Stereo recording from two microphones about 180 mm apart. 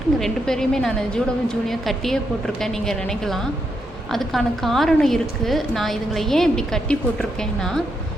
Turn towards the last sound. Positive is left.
turn(degrees=5)  # may be behind; listen again after turning